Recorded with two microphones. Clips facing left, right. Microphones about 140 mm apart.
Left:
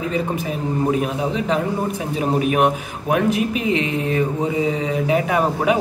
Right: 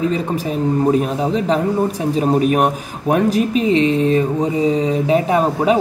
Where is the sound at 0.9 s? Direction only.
35° right (ahead or behind).